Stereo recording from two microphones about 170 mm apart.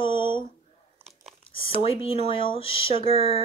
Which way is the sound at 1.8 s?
35° left (ahead or behind).